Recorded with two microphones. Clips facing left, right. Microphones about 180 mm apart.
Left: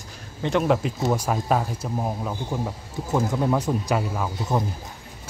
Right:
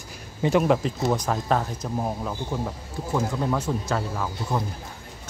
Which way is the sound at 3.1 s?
20° left (ahead or behind).